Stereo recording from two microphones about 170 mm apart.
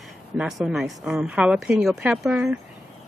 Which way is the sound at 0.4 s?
5° right (ahead or behind).